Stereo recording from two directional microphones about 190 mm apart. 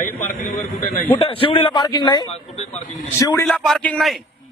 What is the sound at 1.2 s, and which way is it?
Speech, 25° left (ahead or behind).